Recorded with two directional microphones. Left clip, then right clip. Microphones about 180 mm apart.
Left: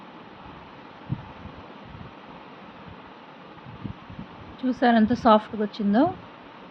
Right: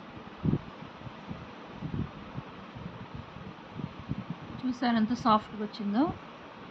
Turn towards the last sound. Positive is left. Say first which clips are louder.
# left 8 dB
turn(degrees=15)  # may be behind; listen again after turning